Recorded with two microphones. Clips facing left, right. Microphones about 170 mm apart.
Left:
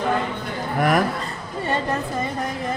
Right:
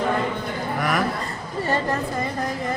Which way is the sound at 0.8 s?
50° left (ahead or behind).